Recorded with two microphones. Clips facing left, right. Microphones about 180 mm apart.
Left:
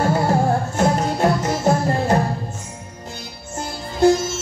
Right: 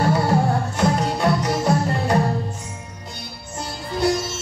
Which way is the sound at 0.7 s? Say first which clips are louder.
Left 2 dB; 50° left (ahead or behind).